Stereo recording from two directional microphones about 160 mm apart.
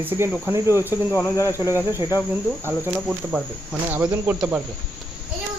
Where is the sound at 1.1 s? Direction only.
15° left (ahead or behind).